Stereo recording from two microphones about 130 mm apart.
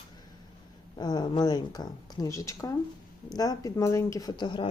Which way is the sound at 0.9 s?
35° left (ahead or behind).